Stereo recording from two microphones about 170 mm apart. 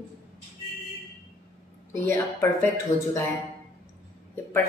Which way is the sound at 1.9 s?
15° left (ahead or behind).